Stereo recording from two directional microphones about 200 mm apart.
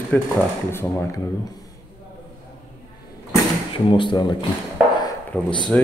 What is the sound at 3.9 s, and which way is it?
Speech, 25° left (ahead or behind).